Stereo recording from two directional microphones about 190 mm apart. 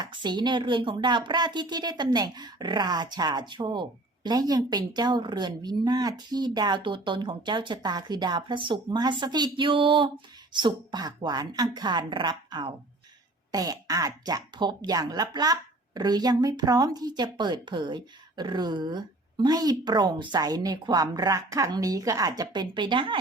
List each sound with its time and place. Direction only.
0.0 s speech: 25° right (ahead or behind)